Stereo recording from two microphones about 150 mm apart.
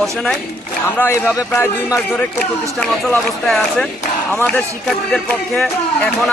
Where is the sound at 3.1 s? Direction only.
5° left (ahead or behind).